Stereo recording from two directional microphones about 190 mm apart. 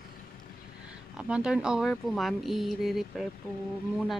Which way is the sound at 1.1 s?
5° right (ahead or behind).